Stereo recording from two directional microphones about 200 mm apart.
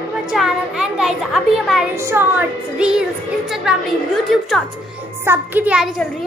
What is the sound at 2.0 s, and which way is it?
Speech, 10° right (ahead or behind).